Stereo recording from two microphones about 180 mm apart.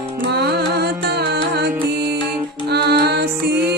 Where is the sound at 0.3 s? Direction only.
65° right (ahead or behind).